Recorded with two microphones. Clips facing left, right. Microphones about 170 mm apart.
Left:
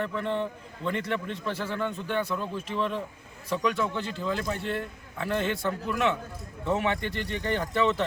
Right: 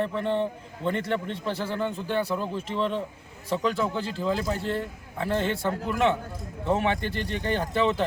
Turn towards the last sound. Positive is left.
turn(degrees=-30)  # may be behind; listen again after turning